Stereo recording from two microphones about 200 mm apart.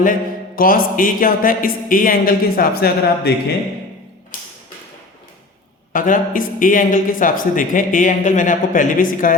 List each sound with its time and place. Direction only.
0.0 s speech: 45° left (ahead or behind)
5.9 s a man's voice: 40° left (ahead or behind)